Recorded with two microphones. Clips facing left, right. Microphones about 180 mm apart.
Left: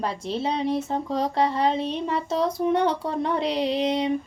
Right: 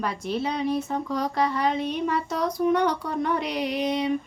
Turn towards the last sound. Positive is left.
turn(degrees=30)  # may be behind; listen again after turning